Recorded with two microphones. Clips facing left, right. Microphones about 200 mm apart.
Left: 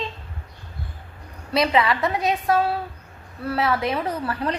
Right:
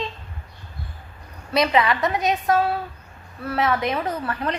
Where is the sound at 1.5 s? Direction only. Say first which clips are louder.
Even; 25° left (ahead or behind).